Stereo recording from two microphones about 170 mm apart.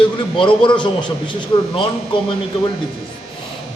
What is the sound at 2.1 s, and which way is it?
Speech, 30° left (ahead or behind).